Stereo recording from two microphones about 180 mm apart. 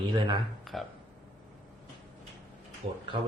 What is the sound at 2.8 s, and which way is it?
Speech, 30° right (ahead or behind).